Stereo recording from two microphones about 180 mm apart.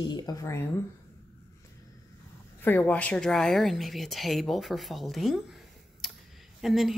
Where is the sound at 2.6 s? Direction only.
10° left (ahead or behind).